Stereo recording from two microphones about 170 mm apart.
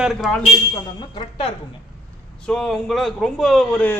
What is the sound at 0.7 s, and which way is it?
Speech, 25° left (ahead or behind).